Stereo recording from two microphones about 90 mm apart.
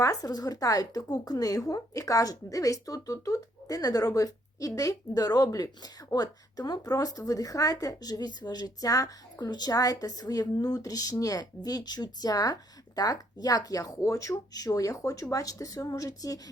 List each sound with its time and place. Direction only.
0.0 s a woman's voice: 40° left (ahead or behind)